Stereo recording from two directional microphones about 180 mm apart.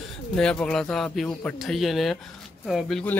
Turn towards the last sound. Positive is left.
turn(degrees=5)  # may be behind; listen again after turning